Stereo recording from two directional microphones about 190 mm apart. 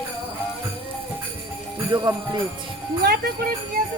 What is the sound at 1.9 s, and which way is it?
Speech, 20° right (ahead or behind).